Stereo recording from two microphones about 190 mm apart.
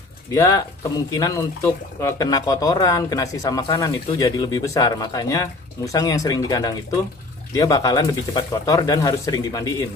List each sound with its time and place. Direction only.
1.1 s speech: 20° left (ahead or behind)